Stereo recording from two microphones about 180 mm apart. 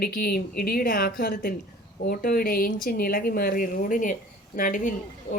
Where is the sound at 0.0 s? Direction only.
55° left (ahead or behind).